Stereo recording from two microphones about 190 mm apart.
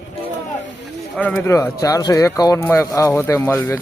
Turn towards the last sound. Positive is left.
turn(degrees=15)  # may be behind; listen again after turning